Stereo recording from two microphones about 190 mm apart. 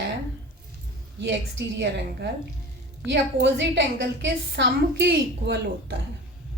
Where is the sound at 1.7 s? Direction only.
65° right (ahead or behind).